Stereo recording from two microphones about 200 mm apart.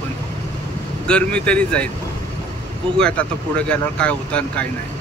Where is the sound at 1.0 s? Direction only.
5° left (ahead or behind).